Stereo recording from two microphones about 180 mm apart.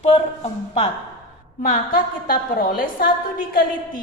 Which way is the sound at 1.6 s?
50° left (ahead or behind).